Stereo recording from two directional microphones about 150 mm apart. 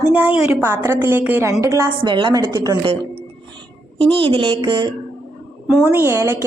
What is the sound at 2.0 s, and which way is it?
Speech, 30° right (ahead or behind).